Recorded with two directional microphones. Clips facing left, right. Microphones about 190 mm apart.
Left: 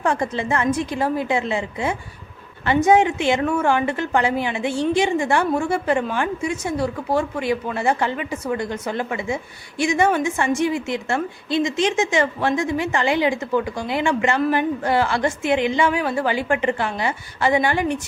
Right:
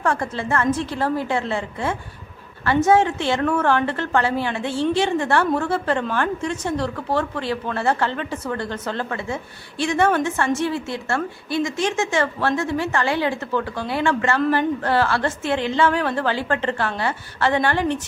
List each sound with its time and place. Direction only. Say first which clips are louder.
0.0 s a woman's voice: left 1 dB; 15° left (ahead or behind)